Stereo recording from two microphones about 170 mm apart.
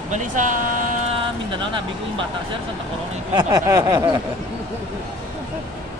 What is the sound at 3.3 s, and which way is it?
Speech, 25° right (ahead or behind).